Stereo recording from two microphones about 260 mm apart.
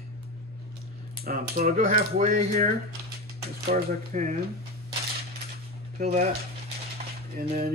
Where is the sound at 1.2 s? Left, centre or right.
Right.